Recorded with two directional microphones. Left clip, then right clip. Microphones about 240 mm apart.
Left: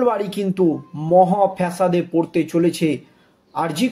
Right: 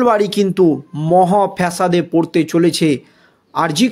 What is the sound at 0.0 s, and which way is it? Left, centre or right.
Speech, right.